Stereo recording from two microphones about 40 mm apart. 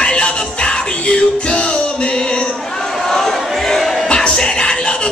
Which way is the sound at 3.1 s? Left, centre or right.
Centre.